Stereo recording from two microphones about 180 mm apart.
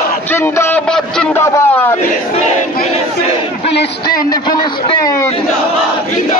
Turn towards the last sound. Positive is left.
turn(degrees=20)  # may be behind; listen again after turning